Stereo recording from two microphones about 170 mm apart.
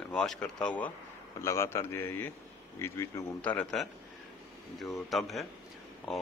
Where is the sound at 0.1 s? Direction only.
5° left (ahead or behind).